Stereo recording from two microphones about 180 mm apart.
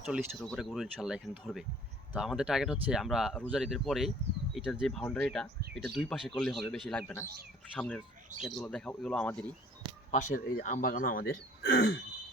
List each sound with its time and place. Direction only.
0.0 s speech: centre (ahead or behind)
10.1 s speech: 45° left (ahead or behind)